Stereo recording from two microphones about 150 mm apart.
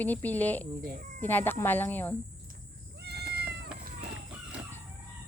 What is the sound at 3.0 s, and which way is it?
Cat, 90° right.